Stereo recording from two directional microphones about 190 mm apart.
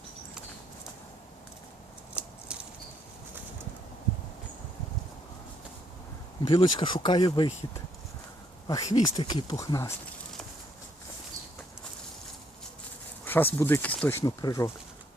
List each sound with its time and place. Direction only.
2.1 s a sound: 5° right (ahead or behind)
6.5 s speech: 25° left (ahead or behind)
8.6 s speech: 20° left (ahead or behind)
13.2 s speech: 10° left (ahead or behind)